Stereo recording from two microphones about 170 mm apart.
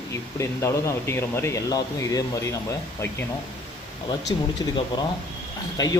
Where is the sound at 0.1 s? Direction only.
15° left (ahead or behind).